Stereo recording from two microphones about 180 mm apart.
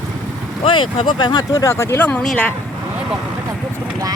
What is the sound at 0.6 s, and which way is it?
Speech, 30° left (ahead or behind).